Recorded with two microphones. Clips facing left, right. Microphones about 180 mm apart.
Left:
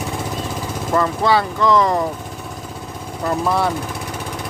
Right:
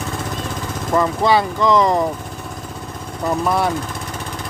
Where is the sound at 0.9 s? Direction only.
15° right (ahead or behind).